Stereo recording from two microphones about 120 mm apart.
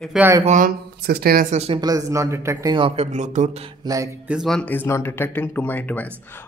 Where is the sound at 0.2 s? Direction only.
25° right (ahead or behind).